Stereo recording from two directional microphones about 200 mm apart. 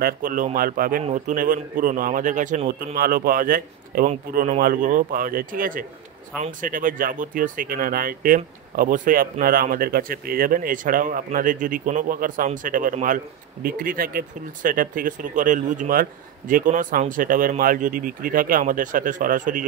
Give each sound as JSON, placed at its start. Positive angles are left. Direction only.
{"t": 0.0, "sound": "speech", "side_deg": -45}